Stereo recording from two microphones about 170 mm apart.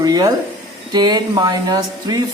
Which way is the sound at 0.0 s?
20° right (ahead or behind).